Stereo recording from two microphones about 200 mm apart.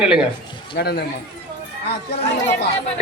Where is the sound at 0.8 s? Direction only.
55° left (ahead or behind).